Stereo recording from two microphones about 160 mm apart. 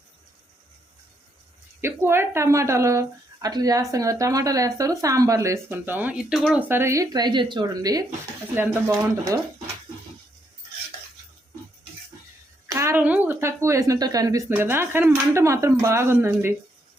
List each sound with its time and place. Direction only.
1.8 s speech: 15° right (ahead or behind)
8.5 s speech: 10° right (ahead or behind)
12.7 s speech: 15° right (ahead or behind)